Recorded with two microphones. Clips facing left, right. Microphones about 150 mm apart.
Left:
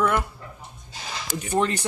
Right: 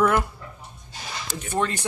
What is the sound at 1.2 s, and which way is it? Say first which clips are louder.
Speech: left 3 dB; 15° left (ahead or behind).